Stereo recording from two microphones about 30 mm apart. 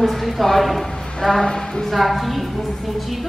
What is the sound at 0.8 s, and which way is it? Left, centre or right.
A woman's voice, centre.